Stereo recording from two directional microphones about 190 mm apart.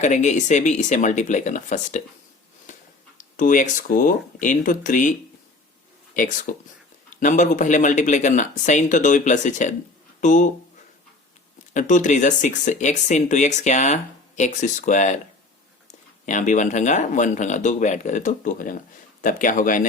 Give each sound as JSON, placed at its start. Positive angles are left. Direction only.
{"t": 0.0, "sound": "speech", "side_deg": 40}
{"t": 2.7, "sound": "a sound", "side_deg": 40}
{"t": 3.2, "sound": "speech", "side_deg": 40}
{"t": 6.1, "sound": "speech", "side_deg": 45}
{"t": 11.7, "sound": "speech", "side_deg": 40}
{"t": 16.2, "sound": "speech", "side_deg": 40}